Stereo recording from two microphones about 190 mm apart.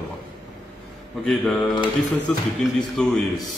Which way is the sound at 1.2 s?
5° left (ahead or behind).